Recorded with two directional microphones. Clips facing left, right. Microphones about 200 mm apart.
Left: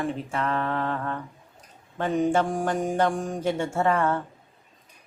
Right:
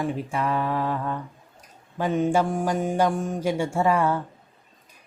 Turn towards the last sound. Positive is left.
turn(degrees=-10)  # may be behind; listen again after turning